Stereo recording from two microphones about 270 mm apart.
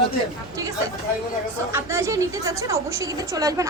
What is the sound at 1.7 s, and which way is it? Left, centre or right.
A woman's voice, centre.